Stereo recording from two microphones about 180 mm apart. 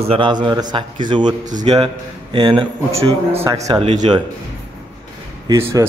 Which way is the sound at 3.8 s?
40° right (ahead or behind).